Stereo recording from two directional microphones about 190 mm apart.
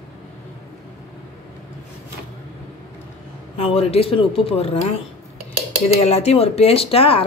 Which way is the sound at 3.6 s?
30° left (ahead or behind).